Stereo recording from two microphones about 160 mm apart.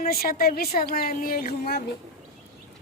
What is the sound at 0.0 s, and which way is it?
A woman's voice, 65° left (ahead or behind).